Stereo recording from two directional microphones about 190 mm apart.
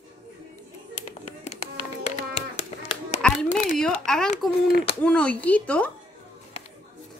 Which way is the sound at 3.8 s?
5° left (ahead or behind).